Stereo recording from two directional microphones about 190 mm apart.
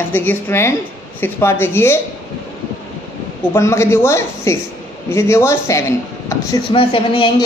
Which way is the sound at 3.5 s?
15° left (ahead or behind).